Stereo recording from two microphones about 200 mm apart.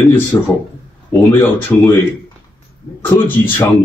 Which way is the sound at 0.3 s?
15° left (ahead or behind).